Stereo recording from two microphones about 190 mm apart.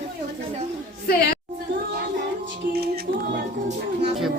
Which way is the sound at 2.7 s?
55° right (ahead or behind).